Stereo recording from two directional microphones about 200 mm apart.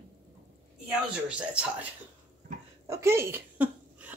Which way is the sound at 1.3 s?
5° right (ahead or behind).